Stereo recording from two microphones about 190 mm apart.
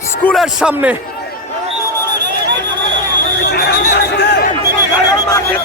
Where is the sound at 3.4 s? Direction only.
60° left (ahead or behind).